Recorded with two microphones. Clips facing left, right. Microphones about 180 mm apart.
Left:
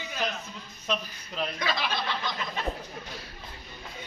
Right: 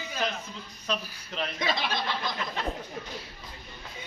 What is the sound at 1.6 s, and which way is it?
Speech, 25° right (ahead or behind).